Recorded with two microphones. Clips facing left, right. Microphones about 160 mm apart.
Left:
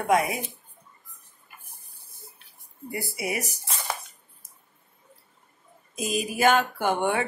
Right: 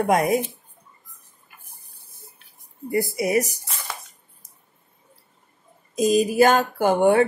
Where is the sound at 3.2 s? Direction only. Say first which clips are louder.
Right 8 dB; 40° right (ahead or behind).